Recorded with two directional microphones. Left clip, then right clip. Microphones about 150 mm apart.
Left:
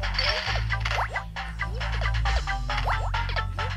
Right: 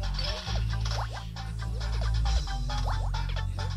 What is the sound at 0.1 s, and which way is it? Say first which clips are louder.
Music: left 10 dB; 50° left (ahead or behind).